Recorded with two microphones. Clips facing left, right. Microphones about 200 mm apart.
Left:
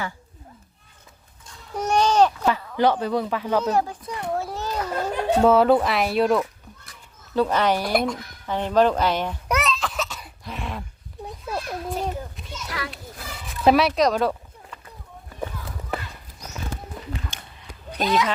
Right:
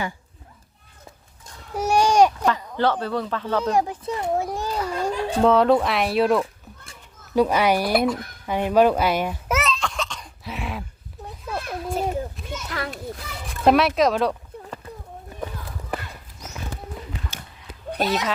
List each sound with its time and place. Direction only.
1.7 s a sound: 10° right (ahead or behind)
2.7 s speech: 15° left (ahead or behind)
3.6 s speech: 15° right (ahead or behind)
4.2 s children playing: 20° right (ahead or behind)
5.4 s speech: 5° left (ahead or behind)
7.3 s speech: 10° right (ahead or behind)
8.4 s a sound: 10° right (ahead or behind)
12.7 s a child's voice: 45° right (ahead or behind)
13.5 s speech: centre (ahead or behind)
17.9 s speech: 50° right (ahead or behind)